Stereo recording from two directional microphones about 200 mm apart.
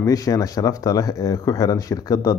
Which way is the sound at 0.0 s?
15° left (ahead or behind).